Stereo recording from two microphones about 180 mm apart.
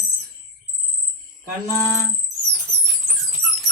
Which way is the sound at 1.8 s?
15° left (ahead or behind).